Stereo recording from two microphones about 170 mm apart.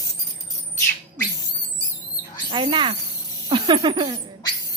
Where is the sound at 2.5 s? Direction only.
30° right (ahead or behind).